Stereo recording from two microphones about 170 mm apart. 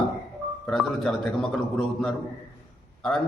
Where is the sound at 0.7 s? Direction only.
Centre (ahead or behind).